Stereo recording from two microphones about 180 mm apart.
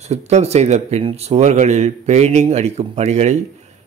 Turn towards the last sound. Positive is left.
turn(degrees=-40)  # may be behind; listen again after turning